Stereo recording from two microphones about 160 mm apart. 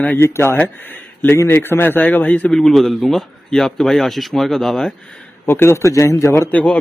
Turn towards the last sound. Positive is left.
turn(degrees=5)  # may be behind; listen again after turning